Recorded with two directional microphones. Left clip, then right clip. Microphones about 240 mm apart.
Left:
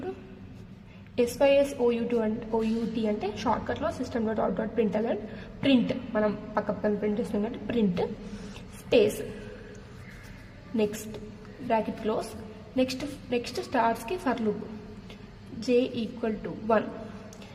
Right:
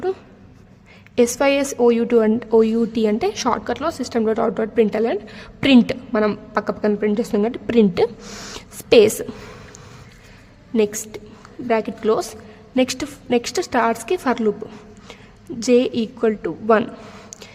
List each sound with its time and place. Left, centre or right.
1.1 s a woman's voice: right
8.5 s a sound: right
10.8 s a woman's voice: right
15.6 s a woman's voice: right